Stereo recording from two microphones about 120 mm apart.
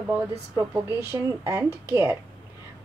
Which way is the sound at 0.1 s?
20° right (ahead or behind).